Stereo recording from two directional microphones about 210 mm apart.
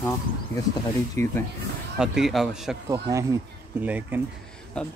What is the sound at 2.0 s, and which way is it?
Speech, centre (ahead or behind).